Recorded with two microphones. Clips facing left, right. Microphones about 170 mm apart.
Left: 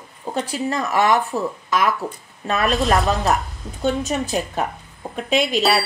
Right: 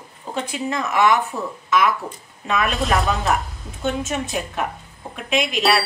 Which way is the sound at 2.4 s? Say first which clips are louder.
Left 1 dB; 35° left (ahead or behind).